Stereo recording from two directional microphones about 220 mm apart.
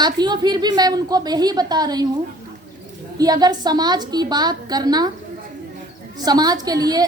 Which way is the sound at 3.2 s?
15° right (ahead or behind).